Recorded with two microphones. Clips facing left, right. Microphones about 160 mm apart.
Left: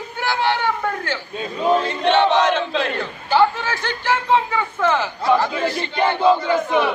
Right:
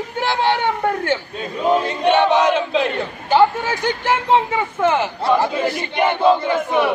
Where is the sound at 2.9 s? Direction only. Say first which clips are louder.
Right 1 dB; 20° right (ahead or behind).